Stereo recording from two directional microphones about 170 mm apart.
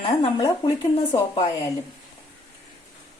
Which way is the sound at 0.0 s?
30° left (ahead or behind).